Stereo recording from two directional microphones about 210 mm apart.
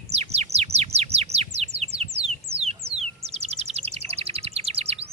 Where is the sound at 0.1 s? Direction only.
30° right (ahead or behind).